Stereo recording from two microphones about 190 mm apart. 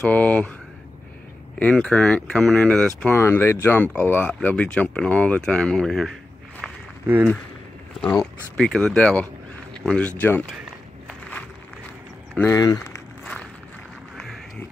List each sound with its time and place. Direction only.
0.0 s speech: 10° left (ahead or behind)
1.6 s speech: 5° left (ahead or behind)
6.6 s walk: 10° right (ahead or behind)
8.0 s speech: 5° left (ahead or behind)
11.1 s a sound: 5° left (ahead or behind)
12.4 s speech: 15° left (ahead or behind)
13.2 s walk: centre (ahead or behind)